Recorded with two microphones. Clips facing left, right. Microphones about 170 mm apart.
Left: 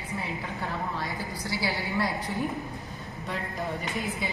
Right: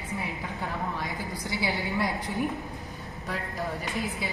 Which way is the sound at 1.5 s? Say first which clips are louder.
Right 1 dB; 20° right (ahead or behind).